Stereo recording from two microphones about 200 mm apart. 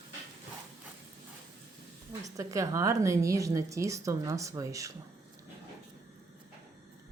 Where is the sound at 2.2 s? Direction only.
15° right (ahead or behind).